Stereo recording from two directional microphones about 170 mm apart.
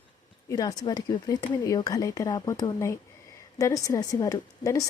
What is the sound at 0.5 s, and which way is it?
A woman's voice, 20° left (ahead or behind).